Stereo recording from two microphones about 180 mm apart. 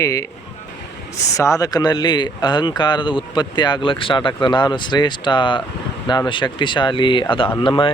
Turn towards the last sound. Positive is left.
turn(degrees=30)  # may be behind; listen again after turning